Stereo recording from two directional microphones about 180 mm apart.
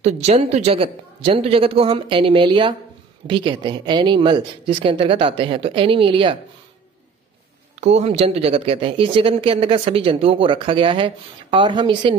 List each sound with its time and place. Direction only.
0.0 s speech: 40° right (ahead or behind)
7.8 s speech: 40° right (ahead or behind)